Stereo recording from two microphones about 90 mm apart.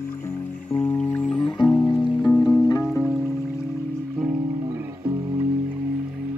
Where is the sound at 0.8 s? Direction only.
15° left (ahead or behind).